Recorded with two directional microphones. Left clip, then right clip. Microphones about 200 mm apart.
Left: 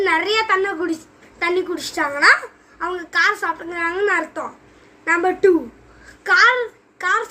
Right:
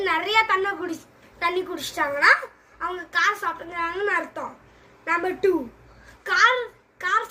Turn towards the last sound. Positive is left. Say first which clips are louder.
# left 4 dB
turn(degrees=15)  # may be behind; listen again after turning